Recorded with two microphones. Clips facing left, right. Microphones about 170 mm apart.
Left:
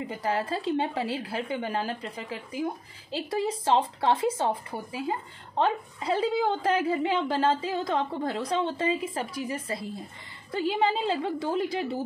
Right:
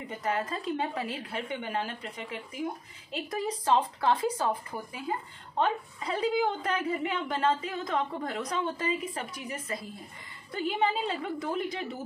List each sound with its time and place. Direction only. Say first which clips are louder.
0.1 s a woman's voice: left 1 dB; 30° left (ahead or behind)